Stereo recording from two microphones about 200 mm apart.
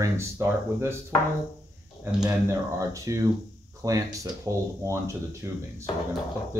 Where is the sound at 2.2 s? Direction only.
15° right (ahead or behind).